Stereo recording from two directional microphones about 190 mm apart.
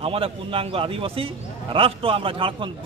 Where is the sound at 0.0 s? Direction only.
30° right (ahead or behind).